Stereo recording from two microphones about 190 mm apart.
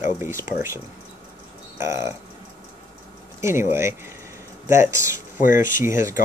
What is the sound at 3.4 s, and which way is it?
Speech, 15° right (ahead or behind).